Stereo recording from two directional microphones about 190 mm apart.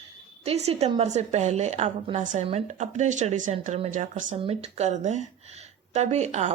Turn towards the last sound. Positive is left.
turn(degrees=-35)  # may be behind; listen again after turning